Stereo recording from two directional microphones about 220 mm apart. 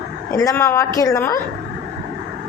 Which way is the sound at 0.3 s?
15° left (ahead or behind).